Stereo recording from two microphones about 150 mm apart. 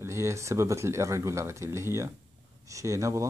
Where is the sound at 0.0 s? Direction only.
20° right (ahead or behind).